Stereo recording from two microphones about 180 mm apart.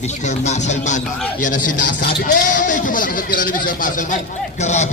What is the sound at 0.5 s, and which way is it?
Speech, 40° left (ahead or behind).